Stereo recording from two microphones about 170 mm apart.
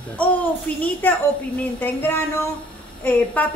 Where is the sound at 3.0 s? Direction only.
10° left (ahead or behind).